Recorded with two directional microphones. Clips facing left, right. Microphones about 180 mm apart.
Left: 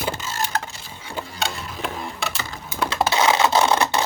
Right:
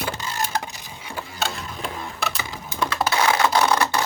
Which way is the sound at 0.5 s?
15° right (ahead or behind).